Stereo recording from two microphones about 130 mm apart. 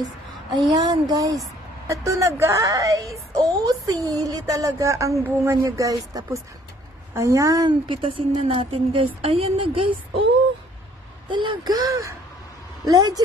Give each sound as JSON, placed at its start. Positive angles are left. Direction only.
{"t": 0.7, "sound": "a woman's voice", "side_deg": -30}
{"t": 7.9, "sound": "a woman's voice", "side_deg": -40}
{"t": 11.2, "sound": "a woman's voice", "side_deg": -35}